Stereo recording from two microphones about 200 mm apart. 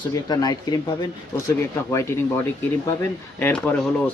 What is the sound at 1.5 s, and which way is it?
Speech, 15° left (ahead or behind).